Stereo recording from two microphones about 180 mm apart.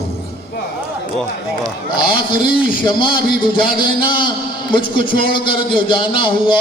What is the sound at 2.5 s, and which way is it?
A man's voice, 25° left (ahead or behind).